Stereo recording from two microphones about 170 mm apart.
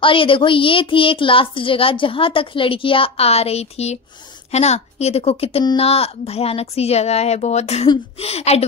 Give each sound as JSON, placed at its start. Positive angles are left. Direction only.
{"t": 0.0, "sound": "a woman's voice", "side_deg": 30}